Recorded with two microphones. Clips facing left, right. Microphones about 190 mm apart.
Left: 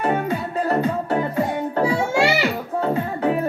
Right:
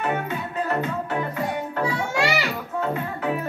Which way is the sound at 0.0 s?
35° left (ahead or behind).